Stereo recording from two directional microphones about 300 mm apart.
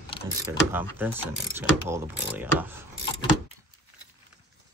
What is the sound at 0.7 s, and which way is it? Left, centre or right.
Speech, centre.